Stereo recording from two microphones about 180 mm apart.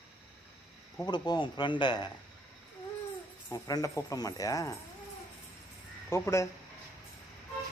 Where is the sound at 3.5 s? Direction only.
20° left (ahead or behind).